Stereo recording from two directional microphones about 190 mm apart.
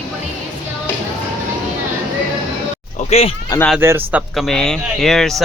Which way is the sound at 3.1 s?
30° left (ahead or behind).